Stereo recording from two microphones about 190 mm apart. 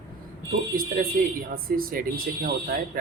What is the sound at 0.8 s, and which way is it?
Speech, 50° right (ahead or behind).